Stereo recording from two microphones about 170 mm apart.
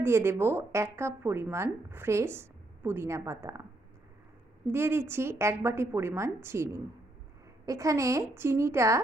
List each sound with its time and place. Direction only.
0.0 s speech: 15° right (ahead or behind)
4.7 s speech: 15° right (ahead or behind)